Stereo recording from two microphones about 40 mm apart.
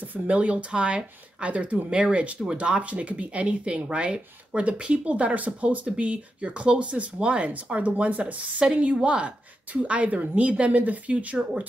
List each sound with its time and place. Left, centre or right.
0.0 s speech: right